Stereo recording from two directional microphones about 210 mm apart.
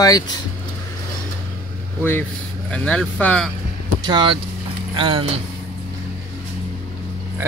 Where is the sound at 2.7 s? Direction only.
5° left (ahead or behind).